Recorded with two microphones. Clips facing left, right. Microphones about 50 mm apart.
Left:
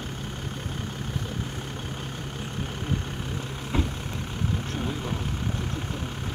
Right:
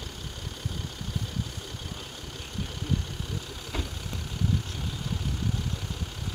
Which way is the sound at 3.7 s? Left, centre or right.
Left.